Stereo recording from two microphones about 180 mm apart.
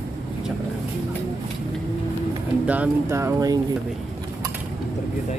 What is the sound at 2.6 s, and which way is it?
Speech, 10° right (ahead or behind).